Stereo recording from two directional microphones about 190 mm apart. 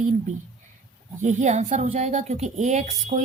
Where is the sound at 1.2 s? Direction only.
40° right (ahead or behind).